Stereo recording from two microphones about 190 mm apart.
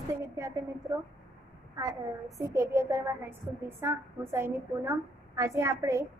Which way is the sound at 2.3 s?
15° right (ahead or behind).